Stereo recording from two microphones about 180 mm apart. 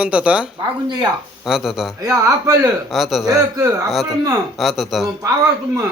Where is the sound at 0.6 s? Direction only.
25° right (ahead or behind).